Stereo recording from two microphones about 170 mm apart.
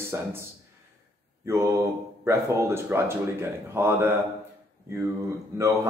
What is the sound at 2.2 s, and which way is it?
Speech, 15° right (ahead or behind).